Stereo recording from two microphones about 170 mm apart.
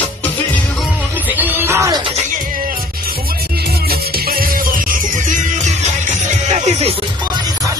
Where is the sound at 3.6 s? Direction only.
65° right (ahead or behind); by 7.4 s 35° right (ahead or behind).